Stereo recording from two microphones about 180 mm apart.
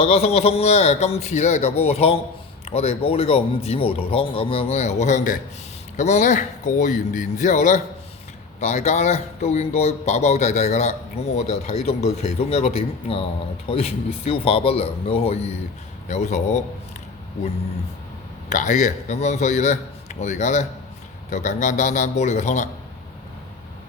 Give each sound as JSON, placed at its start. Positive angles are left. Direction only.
{"t": 0.0, "sound": "speech", "side_deg": 35}
{"t": 18.4, "sound": "speech", "side_deg": 40}